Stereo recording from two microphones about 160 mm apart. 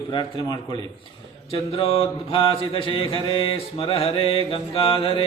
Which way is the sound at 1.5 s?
35° left (ahead or behind).